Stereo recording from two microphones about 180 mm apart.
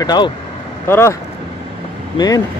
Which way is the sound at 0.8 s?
15° left (ahead or behind).